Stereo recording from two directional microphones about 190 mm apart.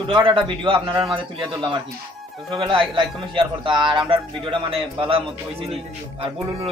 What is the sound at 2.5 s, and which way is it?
A man's voice, 25° right (ahead or behind).